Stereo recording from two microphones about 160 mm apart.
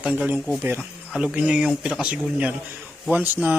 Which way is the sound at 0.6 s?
15° right (ahead or behind).